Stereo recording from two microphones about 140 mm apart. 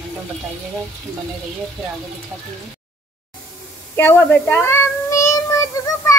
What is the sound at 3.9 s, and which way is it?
Child singing, 15° left (ahead or behind).